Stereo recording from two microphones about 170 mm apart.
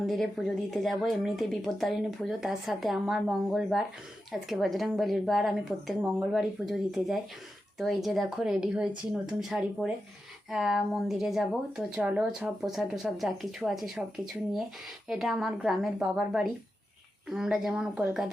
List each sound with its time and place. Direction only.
0.0 s a woman's voice: centre (ahead or behind)
15.0 s a woman's voice: centre (ahead or behind)